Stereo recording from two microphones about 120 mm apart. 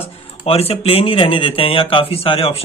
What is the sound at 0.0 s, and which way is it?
Speech, 55° left (ahead or behind).